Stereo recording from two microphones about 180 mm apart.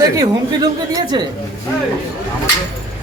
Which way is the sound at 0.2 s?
20° right (ahead or behind).